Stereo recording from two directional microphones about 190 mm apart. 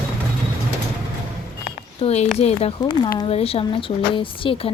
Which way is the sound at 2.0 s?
30° left (ahead or behind).